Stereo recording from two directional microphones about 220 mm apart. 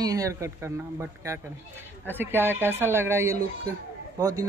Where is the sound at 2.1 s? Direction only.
10° right (ahead or behind).